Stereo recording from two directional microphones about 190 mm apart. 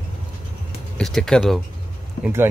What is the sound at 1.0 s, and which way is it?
Speech, centre (ahead or behind).